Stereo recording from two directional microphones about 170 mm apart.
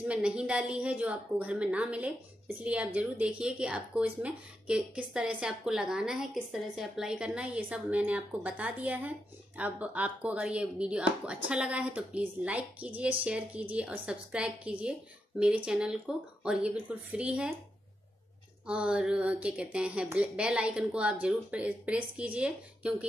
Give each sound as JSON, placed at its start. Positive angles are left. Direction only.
{"t": 0.0, "sound": "a woman's voice", "side_deg": -5}
{"t": 18.7, "sound": "a woman's voice", "side_deg": -5}